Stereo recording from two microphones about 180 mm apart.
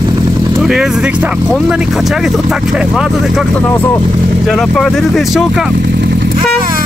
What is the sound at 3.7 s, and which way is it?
A man's voice, 10° left (ahead or behind).